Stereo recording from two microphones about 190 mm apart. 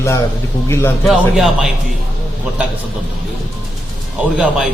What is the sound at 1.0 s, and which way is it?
Speech, centre (ahead or behind).